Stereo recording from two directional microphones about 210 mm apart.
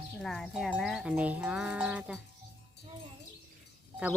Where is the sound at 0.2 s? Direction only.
Centre (ahead or behind).